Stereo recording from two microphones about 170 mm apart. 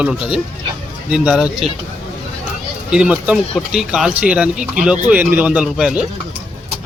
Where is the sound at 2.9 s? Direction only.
5° right (ahead or behind).